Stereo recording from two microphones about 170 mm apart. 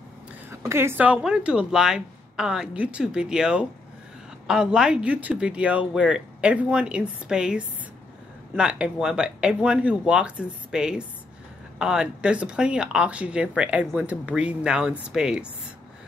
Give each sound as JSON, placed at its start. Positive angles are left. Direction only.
{"t": 0.5, "sound": "speech", "side_deg": -15}